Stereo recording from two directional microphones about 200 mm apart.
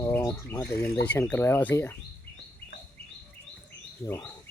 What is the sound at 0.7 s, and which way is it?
Speech, 50° left (ahead or behind).